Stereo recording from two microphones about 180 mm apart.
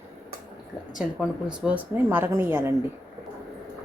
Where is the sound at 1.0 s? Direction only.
5° right (ahead or behind).